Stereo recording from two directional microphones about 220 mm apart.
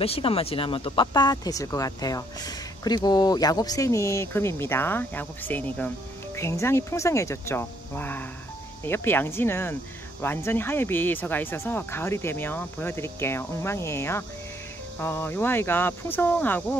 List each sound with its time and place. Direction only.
0.0 s speech: 25° left (ahead or behind); by 16.6 s 10° left (ahead or behind)